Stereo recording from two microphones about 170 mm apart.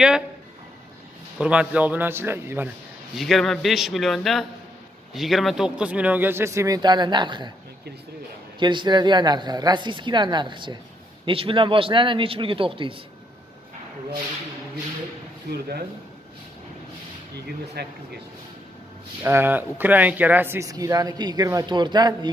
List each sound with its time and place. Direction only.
1.4 s a man's voice: 5° right (ahead or behind)
3.2 s a man's voice: centre (ahead or behind); by 7.5 s 25° right (ahead or behind)
8.5 s a man's voice: 25° right (ahead or behind)
17.8 s speech: 70° right (ahead or behind)
19.2 s speech: 15° right (ahead or behind)